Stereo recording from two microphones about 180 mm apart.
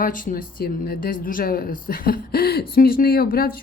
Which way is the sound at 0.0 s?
50° left (ahead or behind).